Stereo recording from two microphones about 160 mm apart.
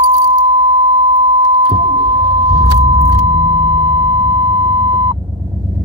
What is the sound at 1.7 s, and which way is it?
Keys jangling, 35° right (ahead or behind).